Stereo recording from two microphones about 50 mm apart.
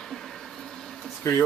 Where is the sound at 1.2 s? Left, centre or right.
Left.